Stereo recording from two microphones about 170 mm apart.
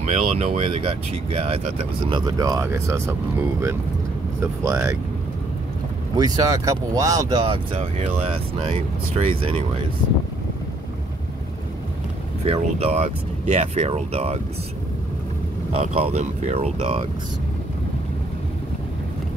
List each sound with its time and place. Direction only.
0.0 s speech: 40° right (ahead or behind); by 3.2 s 15° right (ahead or behind)
4.4 s speech: 15° right (ahead or behind)
6.1 s speech: 25° right (ahead or behind)
12.4 s speech: 35° right (ahead or behind)
15.7 s speech: 40° right (ahead or behind)